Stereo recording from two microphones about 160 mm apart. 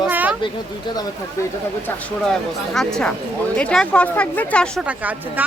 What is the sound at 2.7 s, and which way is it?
Speech, 5° left (ahead or behind).